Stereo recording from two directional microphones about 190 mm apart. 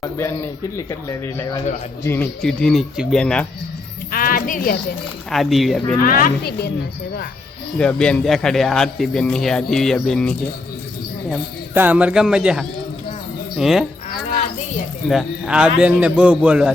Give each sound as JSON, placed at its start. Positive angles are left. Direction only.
{"t": 0.0, "sound": "speech", "side_deg": 15}
{"t": 4.1, "sound": "music", "side_deg": 50}
{"t": 5.3, "sound": "speech", "side_deg": 0}
{"t": 6.0, "sound": "a child's voice", "side_deg": 45}
{"t": 7.8, "sound": "speech", "side_deg": 5}
{"t": 11.7, "sound": "speech", "side_deg": -10}
{"t": 15.1, "sound": "speech", "side_deg": -5}